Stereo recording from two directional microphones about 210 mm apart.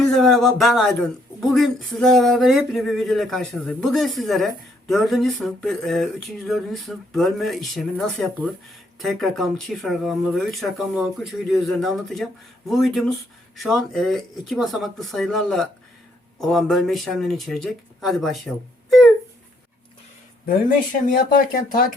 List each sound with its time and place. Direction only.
0.0 s speech: centre (ahead or behind)
20.5 s speech: 40° left (ahead or behind)